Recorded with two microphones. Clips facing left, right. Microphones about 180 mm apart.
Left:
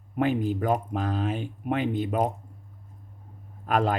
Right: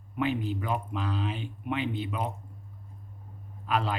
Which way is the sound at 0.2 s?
45° left (ahead or behind).